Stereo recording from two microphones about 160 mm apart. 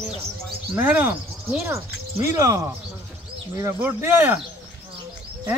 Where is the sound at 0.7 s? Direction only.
10° right (ahead or behind).